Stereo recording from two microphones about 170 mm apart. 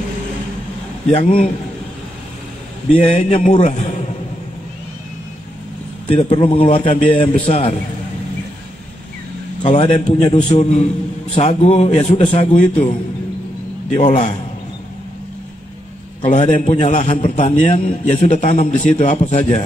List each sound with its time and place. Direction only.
1.1 s a man's voice: 35° left (ahead or behind)
3.0 s a man's voice: 40° left (ahead or behind)
6.0 s a man's voice: 35° left (ahead or behind)
9.6 s a man's voice: 35° left (ahead or behind)
13.9 s a man's voice: 45° left (ahead or behind)
16.3 s a man's voice: 45° left (ahead or behind)